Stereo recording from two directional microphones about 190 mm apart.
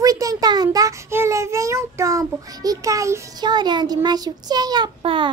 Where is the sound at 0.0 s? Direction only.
20° right (ahead or behind).